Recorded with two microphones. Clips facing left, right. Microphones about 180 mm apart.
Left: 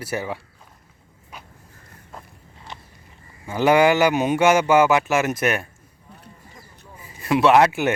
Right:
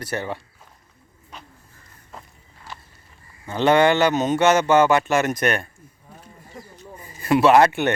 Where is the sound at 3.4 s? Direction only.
10° left (ahead or behind).